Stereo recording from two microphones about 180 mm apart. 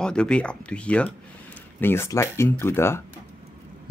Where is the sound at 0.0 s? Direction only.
5° left (ahead or behind).